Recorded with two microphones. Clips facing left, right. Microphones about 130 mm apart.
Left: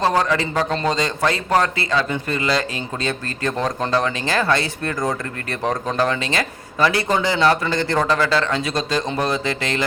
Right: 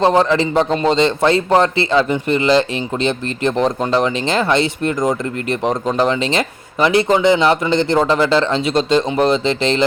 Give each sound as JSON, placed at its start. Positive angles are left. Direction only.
{"t": 0.0, "sound": "a man's voice", "side_deg": -25}